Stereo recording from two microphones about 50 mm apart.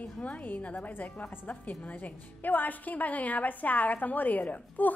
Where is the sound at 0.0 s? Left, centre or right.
Left.